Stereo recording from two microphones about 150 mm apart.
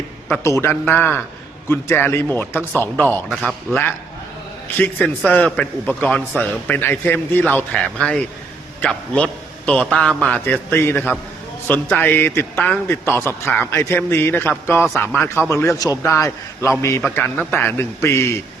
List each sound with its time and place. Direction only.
0.4 s a man's voice: 15° left (ahead or behind)
4.8 s a man's voice: 10° left (ahead or behind)